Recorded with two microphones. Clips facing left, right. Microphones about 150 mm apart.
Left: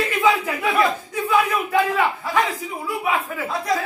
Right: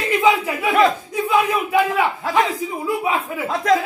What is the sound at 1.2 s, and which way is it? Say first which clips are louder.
Battle cry: right 2 dB; 10° right (ahead or behind).